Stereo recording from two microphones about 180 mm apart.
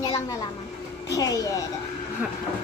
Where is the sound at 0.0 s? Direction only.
20° left (ahead or behind).